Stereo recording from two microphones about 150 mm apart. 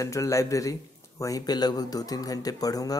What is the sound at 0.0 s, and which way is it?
Speech, 20° left (ahead or behind).